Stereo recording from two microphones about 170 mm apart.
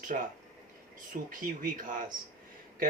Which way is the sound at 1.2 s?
55° right (ahead or behind).